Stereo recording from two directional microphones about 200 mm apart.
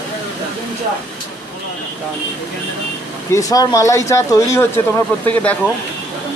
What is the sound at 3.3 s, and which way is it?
Speech, 15° left (ahead or behind).